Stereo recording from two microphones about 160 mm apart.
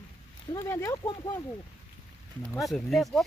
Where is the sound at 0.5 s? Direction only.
15° left (ahead or behind).